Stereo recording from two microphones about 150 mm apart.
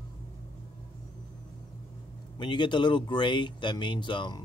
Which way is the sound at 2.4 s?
30° left (ahead or behind).